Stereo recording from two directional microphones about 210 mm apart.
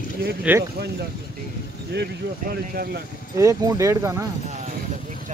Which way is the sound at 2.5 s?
45° right (ahead or behind).